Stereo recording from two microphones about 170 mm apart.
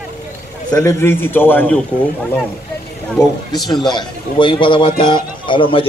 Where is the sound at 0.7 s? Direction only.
20° left (ahead or behind).